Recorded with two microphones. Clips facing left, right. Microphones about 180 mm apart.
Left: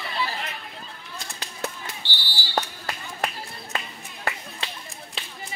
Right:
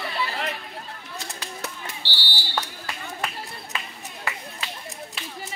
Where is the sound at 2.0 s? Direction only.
80° right.